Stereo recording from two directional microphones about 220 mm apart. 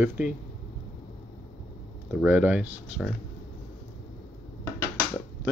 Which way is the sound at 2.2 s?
5° right (ahead or behind).